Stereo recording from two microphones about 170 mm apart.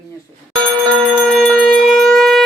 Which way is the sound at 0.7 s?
20° right (ahead or behind).